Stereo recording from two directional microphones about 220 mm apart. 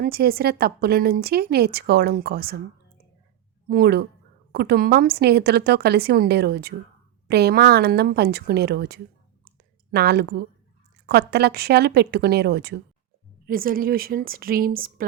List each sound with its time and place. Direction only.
0.0 s a woman's voice: 45° right (ahead or behind)
3.7 s a woman's voice: 45° right (ahead or behind)